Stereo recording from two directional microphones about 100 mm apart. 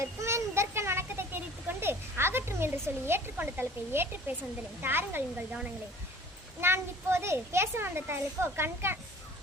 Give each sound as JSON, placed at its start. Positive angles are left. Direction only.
{"t": 0.0, "sound": "a sound", "side_deg": -30}
{"t": 4.8, "sound": "a child's voice", "side_deg": -20}
{"t": 6.6, "sound": "a child's voice", "side_deg": -25}